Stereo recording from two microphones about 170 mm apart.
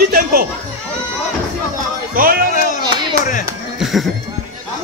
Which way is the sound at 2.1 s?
55° right (ahead or behind).